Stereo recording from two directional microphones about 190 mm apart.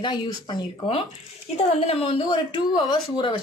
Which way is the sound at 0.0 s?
25° left (ahead or behind).